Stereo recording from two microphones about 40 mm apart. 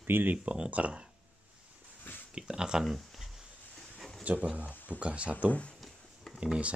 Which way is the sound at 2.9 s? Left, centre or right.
Centre.